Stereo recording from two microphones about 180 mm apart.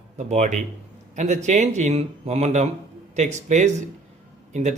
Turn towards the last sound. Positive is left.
turn(degrees=-40)  # may be behind; listen again after turning